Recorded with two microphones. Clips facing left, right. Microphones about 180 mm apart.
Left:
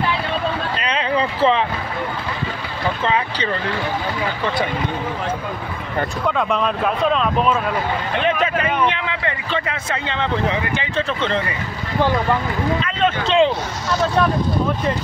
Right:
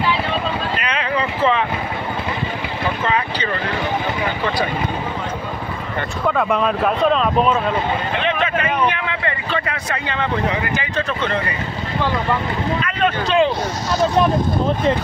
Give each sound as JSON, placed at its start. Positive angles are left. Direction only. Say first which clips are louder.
{"t": 0.7, "sound": "a sound", "louder": "left 1 dB", "side_deg": 30}
{"t": 6.2, "sound": "speech", "louder": "right 3 dB", "side_deg": -5}
{"t": 9.5, "sound": "speech", "louder": "even", "side_deg": 20}
{"t": 13.0, "sound": "speech", "louder": "even", "side_deg": 25}